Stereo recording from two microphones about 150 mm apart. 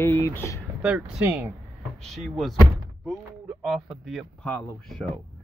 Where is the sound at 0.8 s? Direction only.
10° right (ahead or behind).